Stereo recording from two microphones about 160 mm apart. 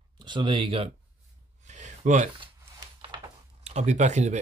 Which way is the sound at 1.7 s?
45° right (ahead or behind).